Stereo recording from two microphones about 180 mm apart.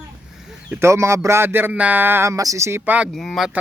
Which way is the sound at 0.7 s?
15° right (ahead or behind).